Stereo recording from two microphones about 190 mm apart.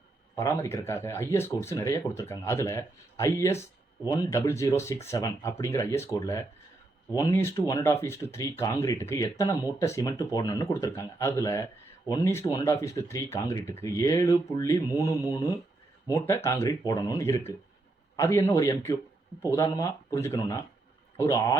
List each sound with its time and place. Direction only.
0.3 s speech: 15° left (ahead or behind)
16.1 s speech: 15° left (ahead or behind)